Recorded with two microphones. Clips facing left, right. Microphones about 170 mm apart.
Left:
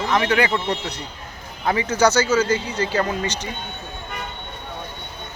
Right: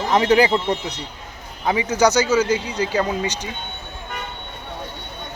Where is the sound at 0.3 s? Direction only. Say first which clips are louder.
Right 4 dB; 30° right (ahead or behind).